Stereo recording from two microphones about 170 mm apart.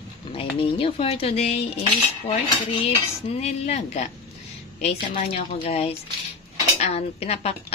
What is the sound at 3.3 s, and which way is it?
Speech, 40° left (ahead or behind).